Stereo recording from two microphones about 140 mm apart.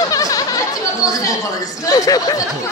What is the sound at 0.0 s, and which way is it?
Chatter, 25° left (ahead or behind).